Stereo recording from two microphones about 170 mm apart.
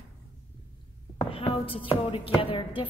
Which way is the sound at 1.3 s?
25° left (ahead or behind).